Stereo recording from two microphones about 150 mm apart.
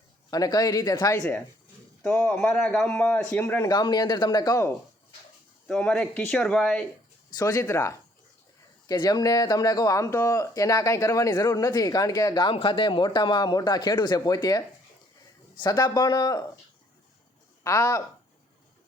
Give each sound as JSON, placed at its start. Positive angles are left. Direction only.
{"t": 0.3, "sound": "speech", "side_deg": 25}
{"t": 2.0, "sound": "a man's voice", "side_deg": 10}
{"t": 5.6, "sound": "a man's voice", "side_deg": 5}
{"t": 7.3, "sound": "speech", "side_deg": 25}
{"t": 17.6, "sound": "speech", "side_deg": 20}